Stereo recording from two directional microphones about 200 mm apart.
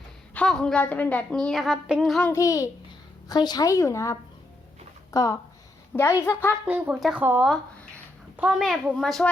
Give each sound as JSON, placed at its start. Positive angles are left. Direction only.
{"t": 0.3, "sound": "a woman's voice", "side_deg": 5}
{"t": 2.3, "sound": "a woman's voice", "side_deg": 15}
{"t": 6.7, "sound": "a child's voice", "side_deg": -10}